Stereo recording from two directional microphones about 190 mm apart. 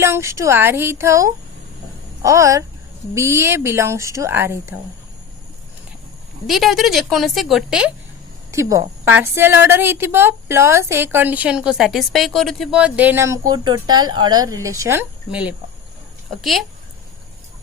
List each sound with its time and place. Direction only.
0.0 s a woman's voice: 15° right (ahead or behind)
6.5 s a woman's voice: centre (ahead or behind)
8.5 s a woman's voice: 10° right (ahead or behind)